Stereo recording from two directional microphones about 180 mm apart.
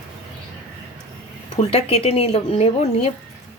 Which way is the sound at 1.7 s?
35° left (ahead or behind).